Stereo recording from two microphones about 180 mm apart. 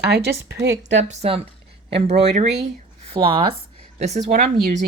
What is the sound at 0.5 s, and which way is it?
Speech, 70° right (ahead or behind).